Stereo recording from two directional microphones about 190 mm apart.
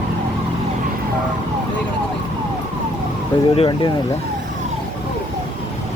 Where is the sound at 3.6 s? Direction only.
25° left (ahead or behind).